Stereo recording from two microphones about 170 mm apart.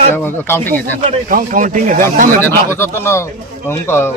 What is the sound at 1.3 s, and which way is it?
Speech, 50° right (ahead or behind).